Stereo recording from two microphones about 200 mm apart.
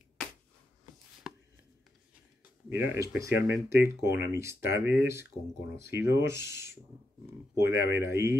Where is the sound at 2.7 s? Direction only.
10° right (ahead or behind).